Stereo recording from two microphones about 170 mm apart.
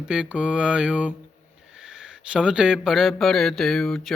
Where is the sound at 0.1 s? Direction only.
5° right (ahead or behind).